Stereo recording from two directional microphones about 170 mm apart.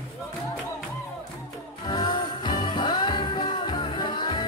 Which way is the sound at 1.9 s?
25° left (ahead or behind).